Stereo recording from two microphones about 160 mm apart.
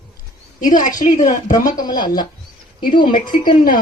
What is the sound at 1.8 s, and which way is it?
Speech, 25° left (ahead or behind).